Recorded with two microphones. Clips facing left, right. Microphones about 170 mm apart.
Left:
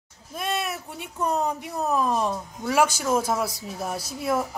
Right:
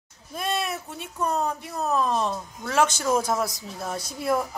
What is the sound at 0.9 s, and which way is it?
A woman's voice, 15° left (ahead or behind).